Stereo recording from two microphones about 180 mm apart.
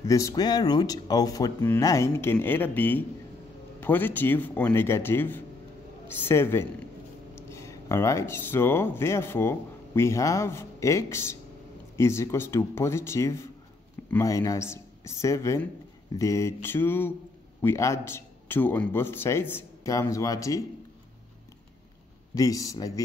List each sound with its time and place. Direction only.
0.0 s a man's voice: 20° left (ahead or behind)
22.3 s speech: 20° left (ahead or behind)